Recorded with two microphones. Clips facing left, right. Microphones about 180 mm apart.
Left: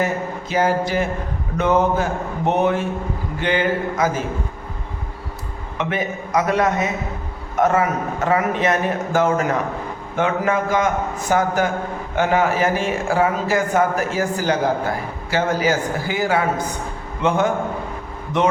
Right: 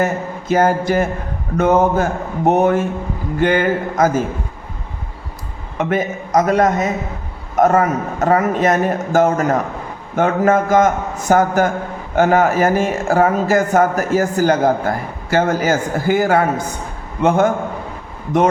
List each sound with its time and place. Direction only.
0.0 s speech: 50° right (ahead or behind)
5.7 s a man's voice: 45° right (ahead or behind)